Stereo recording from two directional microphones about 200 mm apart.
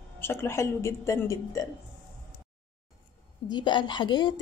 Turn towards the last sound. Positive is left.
turn(degrees=25)  # may be behind; listen again after turning